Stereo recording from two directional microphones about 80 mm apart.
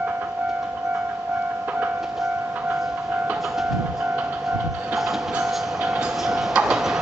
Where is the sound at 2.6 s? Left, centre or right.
Centre.